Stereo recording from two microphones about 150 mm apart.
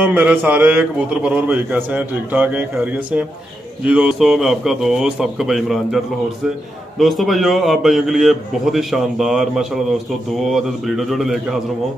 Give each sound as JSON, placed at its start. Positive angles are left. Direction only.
{"t": 0.0, "sound": "a man's voice", "side_deg": -10}
{"t": 7.0, "sound": "a man's voice", "side_deg": 0}